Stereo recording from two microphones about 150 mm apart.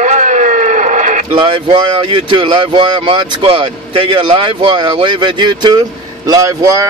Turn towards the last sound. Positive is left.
turn(degrees=-20)  # may be behind; listen again after turning